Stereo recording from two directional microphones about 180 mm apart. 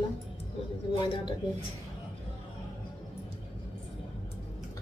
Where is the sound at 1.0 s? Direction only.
30° left (ahead or behind).